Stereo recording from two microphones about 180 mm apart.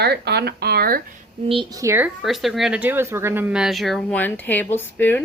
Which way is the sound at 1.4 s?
30° right (ahead or behind).